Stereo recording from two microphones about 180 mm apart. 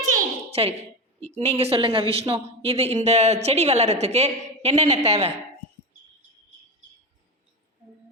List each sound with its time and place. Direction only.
0.5 s a woman's voice: 35° right (ahead or behind)